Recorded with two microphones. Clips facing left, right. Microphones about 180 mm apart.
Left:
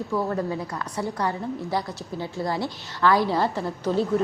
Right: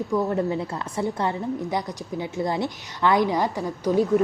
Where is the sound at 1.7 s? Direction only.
20° right (ahead or behind).